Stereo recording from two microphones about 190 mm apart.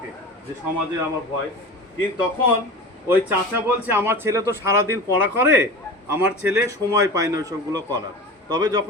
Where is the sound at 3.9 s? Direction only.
10° right (ahead or behind).